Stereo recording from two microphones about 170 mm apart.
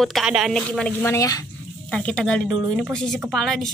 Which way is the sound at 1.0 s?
15° left (ahead or behind).